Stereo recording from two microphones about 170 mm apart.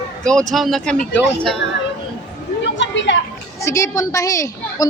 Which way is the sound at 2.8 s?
90° left.